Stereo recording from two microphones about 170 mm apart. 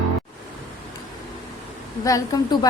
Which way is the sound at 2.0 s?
20° left (ahead or behind).